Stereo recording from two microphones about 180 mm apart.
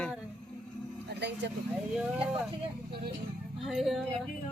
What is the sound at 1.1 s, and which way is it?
Speech, 70° right (ahead or behind).